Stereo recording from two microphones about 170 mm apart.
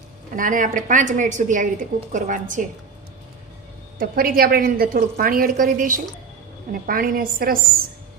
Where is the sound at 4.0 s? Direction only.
60° right (ahead or behind).